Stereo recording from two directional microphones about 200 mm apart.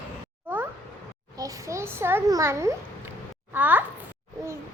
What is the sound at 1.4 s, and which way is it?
A child's voice, 15° right (ahead or behind).